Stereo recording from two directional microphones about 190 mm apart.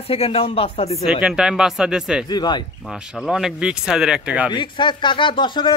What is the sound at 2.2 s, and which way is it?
Speech, 20° left (ahead or behind).